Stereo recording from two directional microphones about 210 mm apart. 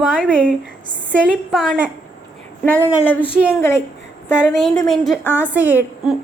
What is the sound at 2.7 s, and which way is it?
Speech, 5° left (ahead or behind).